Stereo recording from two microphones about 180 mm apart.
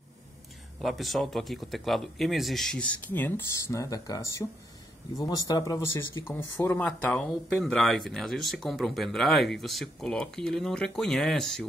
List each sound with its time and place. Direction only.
0.7 s speech: centre (ahead or behind); by 6.3 s 20° left (ahead or behind)
6.6 s speech: 10° left (ahead or behind)